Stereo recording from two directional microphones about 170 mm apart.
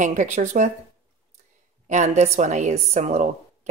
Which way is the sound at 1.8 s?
45° right (ahead or behind).